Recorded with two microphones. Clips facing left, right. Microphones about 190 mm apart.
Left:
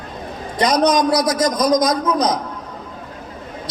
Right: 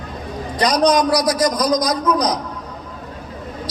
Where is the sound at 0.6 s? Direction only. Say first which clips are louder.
Even; 25° left (ahead or behind).